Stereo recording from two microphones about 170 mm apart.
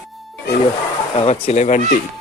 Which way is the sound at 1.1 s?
40° left (ahead or behind).